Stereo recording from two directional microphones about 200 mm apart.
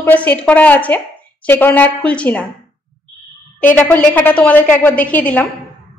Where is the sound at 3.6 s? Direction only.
5° left (ahead or behind).